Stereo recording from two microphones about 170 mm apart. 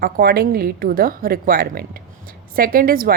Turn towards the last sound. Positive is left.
turn(degrees=-60)  # may be behind; listen again after turning